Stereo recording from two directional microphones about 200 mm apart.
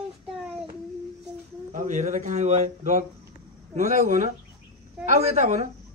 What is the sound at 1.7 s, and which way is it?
Speech, 40° right (ahead or behind).